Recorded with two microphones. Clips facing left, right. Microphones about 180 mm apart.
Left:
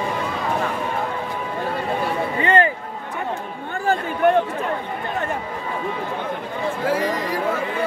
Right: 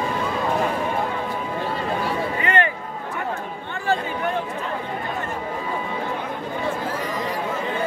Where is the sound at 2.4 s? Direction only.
30° left (ahead or behind).